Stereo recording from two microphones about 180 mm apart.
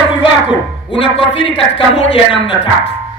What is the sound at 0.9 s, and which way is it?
A woman's voice, 30° left (ahead or behind).